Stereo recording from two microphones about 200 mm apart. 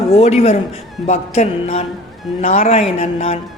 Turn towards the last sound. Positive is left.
turn(degrees=30)  # may be behind; listen again after turning